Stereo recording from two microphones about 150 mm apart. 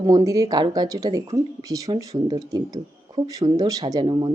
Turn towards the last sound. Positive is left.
turn(degrees=-30)  # may be behind; listen again after turning